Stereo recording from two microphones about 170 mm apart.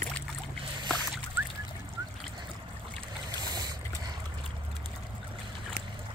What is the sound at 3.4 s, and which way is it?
Boat, 25° right (ahead or behind).